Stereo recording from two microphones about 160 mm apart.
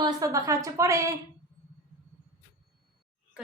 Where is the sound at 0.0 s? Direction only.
20° right (ahead or behind).